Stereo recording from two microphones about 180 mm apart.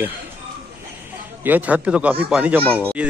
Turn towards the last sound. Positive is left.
turn(degrees=-5)  # may be behind; listen again after turning